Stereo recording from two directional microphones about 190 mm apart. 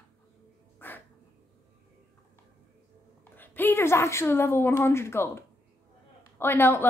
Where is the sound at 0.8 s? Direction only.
10° left (ahead or behind).